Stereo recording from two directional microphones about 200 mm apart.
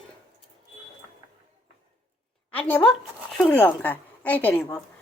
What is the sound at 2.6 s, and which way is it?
A woman's voice, 10° left (ahead or behind).